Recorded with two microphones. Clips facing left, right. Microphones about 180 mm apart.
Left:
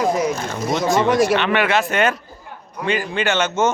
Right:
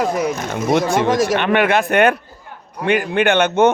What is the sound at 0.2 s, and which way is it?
Speech, 55° right (ahead or behind).